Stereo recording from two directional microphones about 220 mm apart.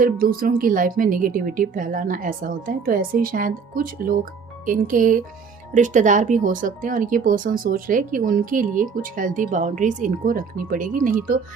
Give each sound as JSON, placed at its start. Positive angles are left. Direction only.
{"t": 0.0, "sound": "speech", "side_deg": -40}